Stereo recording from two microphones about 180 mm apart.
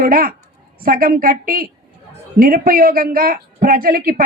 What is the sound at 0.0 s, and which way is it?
A man's voice, 50° right (ahead or behind).